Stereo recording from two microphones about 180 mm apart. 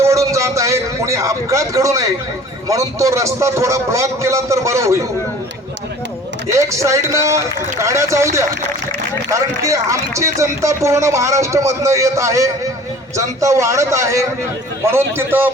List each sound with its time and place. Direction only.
0.0 s a sound: 15° right (ahead or behind)
2.6 s speech: 15° right (ahead or behind)
6.5 s speech: 15° right (ahead or behind)